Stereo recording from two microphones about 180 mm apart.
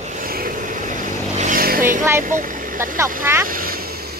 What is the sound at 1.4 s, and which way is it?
Vehicle, 50° right (ahead or behind).